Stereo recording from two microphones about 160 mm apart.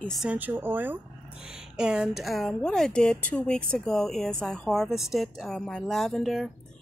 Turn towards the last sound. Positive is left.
turn(degrees=0)  # may be behind; listen again after turning